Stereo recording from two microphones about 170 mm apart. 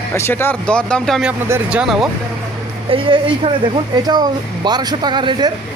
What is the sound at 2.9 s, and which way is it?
Speech, 30° right (ahead or behind).